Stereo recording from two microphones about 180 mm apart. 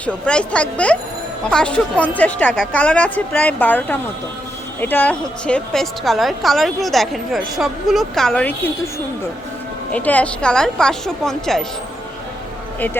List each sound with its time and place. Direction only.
0.0 s a woman's voice: 5° left (ahead or behind)
9.9 s a woman's voice: 10° left (ahead or behind)